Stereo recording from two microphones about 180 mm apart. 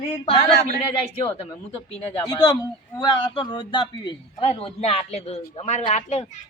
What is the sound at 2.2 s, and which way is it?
A man's voice, 20° left (ahead or behind).